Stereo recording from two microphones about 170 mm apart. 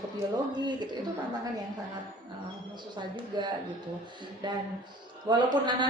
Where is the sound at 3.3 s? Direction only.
25° right (ahead or behind).